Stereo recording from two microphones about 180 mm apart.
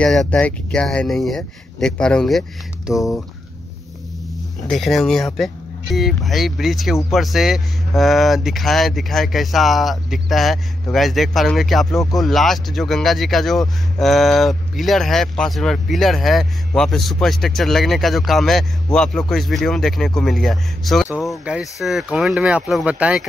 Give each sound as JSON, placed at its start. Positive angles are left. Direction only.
{"t": 0.0, "sound": "speech", "side_deg": 5}
{"t": 2.9, "sound": "speech", "side_deg": 20}
{"t": 4.6, "sound": "speech", "side_deg": 0}